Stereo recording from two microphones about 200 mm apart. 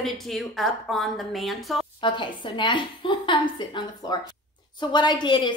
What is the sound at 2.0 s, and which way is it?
Speech, 25° left (ahead or behind).